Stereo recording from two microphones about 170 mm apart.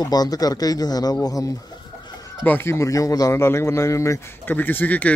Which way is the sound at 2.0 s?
25° left (ahead or behind).